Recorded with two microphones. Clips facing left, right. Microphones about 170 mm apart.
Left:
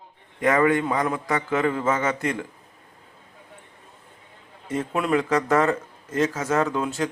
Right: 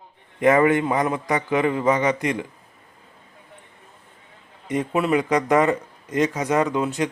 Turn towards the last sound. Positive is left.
turn(degrees=-15)  # may be behind; listen again after turning